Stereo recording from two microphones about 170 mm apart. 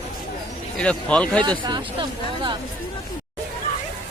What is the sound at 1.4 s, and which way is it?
Speech, 25° right (ahead or behind).